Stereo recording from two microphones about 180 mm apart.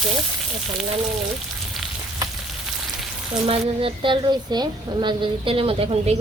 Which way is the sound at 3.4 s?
30° right (ahead or behind).